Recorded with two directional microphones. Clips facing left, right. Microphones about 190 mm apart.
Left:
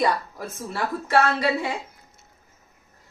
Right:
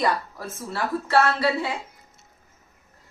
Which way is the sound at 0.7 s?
15° left (ahead or behind).